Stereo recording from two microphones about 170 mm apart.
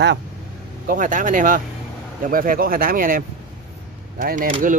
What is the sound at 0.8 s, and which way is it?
Speech, 50° right (ahead or behind).